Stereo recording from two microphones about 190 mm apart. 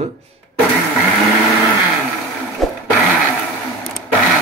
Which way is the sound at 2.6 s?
Centre (ahead or behind).